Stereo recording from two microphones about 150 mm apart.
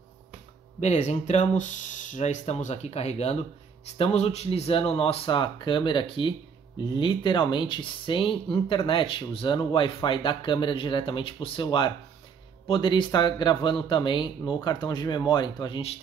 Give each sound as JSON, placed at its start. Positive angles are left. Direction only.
{"t": 0.7, "sound": "speech", "side_deg": 50}